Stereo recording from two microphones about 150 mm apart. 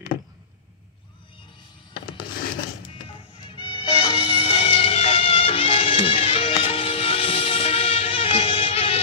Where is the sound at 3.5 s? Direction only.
35° left (ahead or behind).